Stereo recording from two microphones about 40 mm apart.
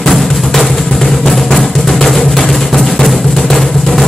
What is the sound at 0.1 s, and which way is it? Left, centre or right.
Music, centre.